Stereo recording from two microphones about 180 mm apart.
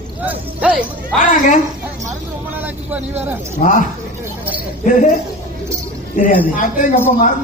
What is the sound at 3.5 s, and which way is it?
Speech, 50° left (ahead or behind).